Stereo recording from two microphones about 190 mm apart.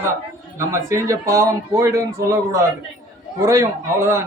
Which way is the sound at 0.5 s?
15° right (ahead or behind).